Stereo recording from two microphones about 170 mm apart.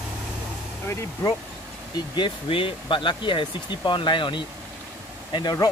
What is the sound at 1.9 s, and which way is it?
Speech, 25° left (ahead or behind).